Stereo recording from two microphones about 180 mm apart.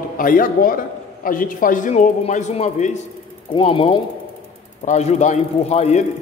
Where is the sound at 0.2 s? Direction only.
50° left (ahead or behind).